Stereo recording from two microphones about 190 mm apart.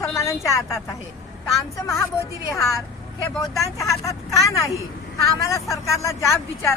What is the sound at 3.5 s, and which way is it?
Speech, 15° left (ahead or behind).